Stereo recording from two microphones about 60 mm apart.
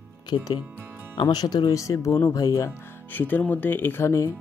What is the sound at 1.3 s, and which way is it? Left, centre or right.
Speech, left.